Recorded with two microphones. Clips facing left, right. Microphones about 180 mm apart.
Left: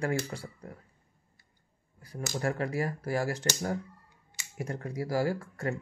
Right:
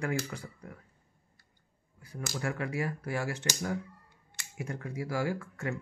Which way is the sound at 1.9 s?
35° left (ahead or behind).